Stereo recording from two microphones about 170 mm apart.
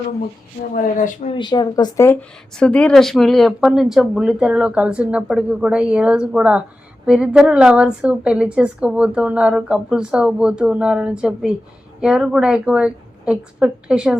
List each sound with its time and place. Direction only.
0.7 s speech: 50° left (ahead or behind)
1.4 s speech: 25° left (ahead or behind)
2.6 s a woman's voice: 5° left (ahead or behind)